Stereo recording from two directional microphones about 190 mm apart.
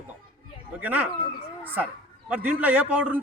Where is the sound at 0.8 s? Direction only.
10° right (ahead or behind).